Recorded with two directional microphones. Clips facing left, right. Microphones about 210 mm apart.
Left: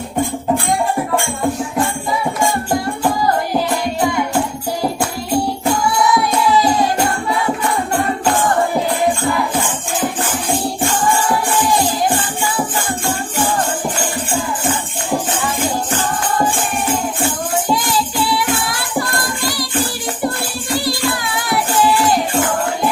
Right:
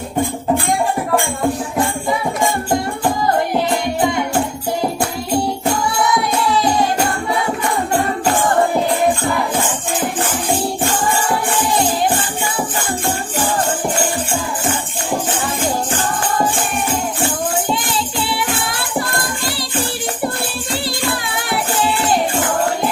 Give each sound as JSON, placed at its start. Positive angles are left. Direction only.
{"t": 18.3, "sound": "music", "side_deg": -25}
{"t": 21.5, "sound": "music", "side_deg": -25}